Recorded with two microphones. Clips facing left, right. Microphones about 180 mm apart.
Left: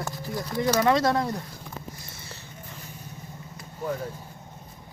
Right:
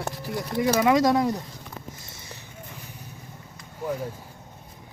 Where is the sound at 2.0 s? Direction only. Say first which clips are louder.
Even; 20° right (ahead or behind).